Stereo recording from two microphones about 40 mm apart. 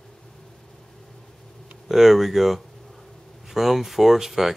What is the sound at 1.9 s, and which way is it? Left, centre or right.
Speech, centre.